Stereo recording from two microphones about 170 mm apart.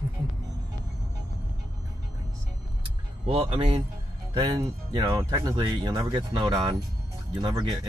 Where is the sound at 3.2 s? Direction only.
35° right (ahead or behind).